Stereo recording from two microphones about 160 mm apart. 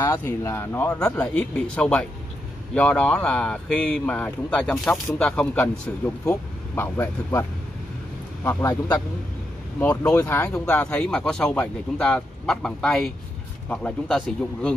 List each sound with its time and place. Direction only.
0.0 s speech: 20° left (ahead or behind)
8.5 s speech: 15° left (ahead or behind)
9.8 s speech: 10° left (ahead or behind)